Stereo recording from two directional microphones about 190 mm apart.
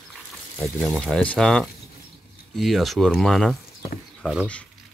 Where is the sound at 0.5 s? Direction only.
Centre (ahead or behind).